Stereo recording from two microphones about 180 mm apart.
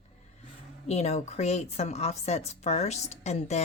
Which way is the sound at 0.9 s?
40° left (ahead or behind).